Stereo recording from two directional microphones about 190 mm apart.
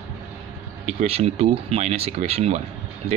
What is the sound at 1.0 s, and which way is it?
Speech, 30° right (ahead or behind).